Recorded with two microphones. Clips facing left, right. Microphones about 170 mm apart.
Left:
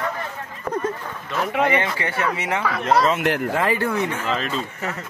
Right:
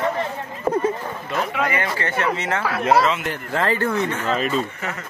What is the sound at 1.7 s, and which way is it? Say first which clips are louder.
Speech: left 2 dB; 20° left (ahead or behind).